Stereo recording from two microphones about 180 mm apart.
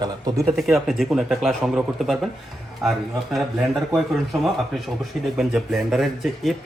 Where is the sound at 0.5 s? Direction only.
Centre (ahead or behind).